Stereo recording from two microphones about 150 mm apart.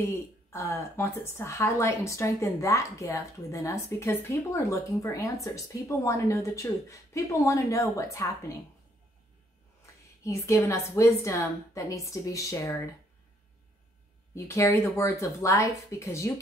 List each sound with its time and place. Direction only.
0.1 s a woman's voice: 15° left (ahead or behind)
10.2 s a woman's voice: 20° left (ahead or behind)
14.3 s a woman's voice: 20° left (ahead or behind)